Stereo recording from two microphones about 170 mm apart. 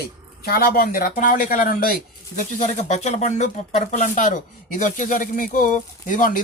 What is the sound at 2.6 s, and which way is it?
Speech, 40° left (ahead or behind).